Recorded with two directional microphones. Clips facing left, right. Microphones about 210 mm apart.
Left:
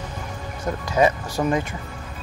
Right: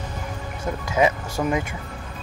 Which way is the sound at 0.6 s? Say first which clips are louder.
Left 1 dB; 10° right (ahead or behind).